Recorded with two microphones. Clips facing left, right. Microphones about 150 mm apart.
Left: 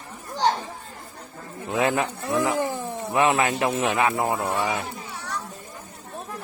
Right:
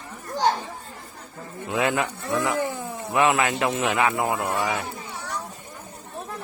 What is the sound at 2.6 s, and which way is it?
Cat, 90° left.